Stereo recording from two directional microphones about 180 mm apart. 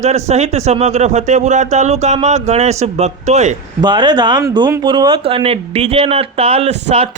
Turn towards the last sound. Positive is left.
turn(degrees=-35)  # may be behind; listen again after turning